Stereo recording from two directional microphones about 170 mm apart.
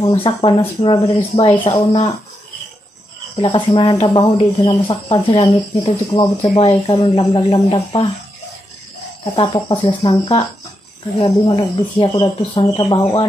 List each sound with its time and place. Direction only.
0.1 s speech: 30° left (ahead or behind)
3.3 s speech: 30° left (ahead or behind)
7.2 s speech: 20° left (ahead or behind)
9.2 s speech: 30° left (ahead or behind)
11.5 s speech: 30° left (ahead or behind)